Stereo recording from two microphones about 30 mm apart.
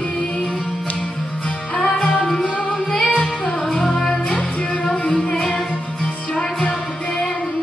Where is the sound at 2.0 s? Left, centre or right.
Left.